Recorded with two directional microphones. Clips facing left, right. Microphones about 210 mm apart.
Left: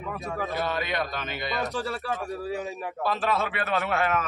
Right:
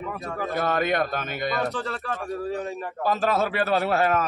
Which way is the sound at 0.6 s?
50° right (ahead or behind).